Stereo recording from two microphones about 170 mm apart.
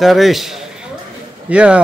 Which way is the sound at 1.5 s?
5° right (ahead or behind).